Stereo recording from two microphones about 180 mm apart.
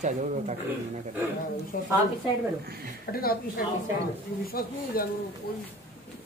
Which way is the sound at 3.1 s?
55° left (ahead or behind).